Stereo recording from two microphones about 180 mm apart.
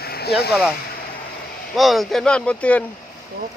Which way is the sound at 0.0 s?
60° left (ahead or behind).